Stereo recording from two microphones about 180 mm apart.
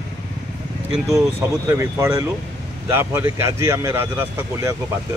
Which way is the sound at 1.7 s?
15° right (ahead or behind).